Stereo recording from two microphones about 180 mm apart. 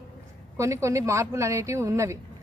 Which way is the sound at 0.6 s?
15° right (ahead or behind).